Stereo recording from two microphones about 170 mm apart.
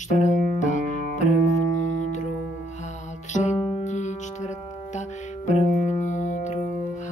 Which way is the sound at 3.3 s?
45° left (ahead or behind).